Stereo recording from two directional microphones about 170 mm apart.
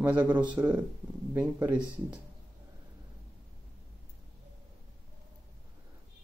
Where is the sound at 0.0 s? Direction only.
10° right (ahead or behind).